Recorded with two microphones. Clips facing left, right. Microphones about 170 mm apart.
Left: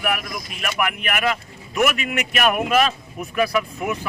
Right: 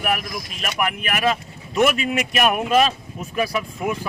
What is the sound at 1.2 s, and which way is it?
Speech, 25° right (ahead or behind).